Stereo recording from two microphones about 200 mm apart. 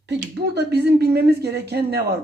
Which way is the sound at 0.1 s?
55° right (ahead or behind).